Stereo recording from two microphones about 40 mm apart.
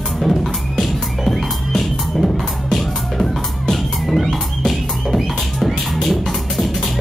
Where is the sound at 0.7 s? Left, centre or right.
Centre.